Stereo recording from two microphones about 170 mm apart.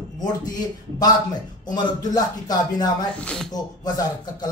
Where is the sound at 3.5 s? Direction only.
25° left (ahead or behind).